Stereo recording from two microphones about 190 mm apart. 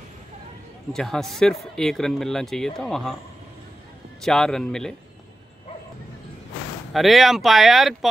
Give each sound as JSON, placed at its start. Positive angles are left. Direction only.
{"t": 0.9, "sound": "speech", "side_deg": 0}
{"t": 4.2, "sound": "speech", "side_deg": 0}
{"t": 6.9, "sound": "speech", "side_deg": 0}